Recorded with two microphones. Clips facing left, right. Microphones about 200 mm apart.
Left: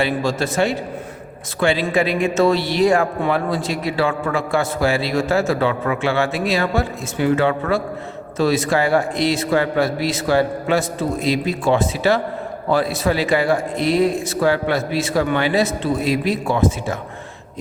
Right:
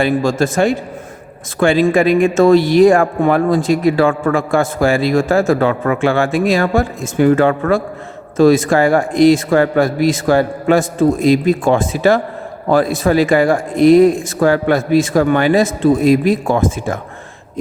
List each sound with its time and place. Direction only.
0.0 s speech: 50° right (ahead or behind)